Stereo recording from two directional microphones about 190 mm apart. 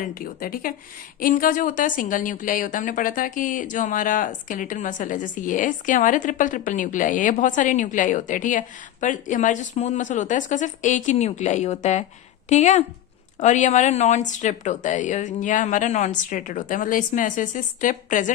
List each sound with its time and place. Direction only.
0.0 s a woman's voice: 50° left (ahead or behind)